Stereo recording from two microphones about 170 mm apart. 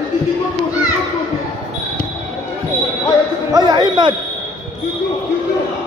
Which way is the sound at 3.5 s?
25° right (ahead or behind).